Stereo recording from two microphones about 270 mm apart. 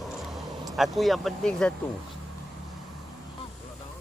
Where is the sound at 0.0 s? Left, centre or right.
Centre.